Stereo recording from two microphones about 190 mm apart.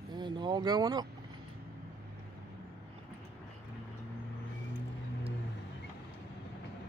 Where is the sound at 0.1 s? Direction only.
25° right (ahead or behind).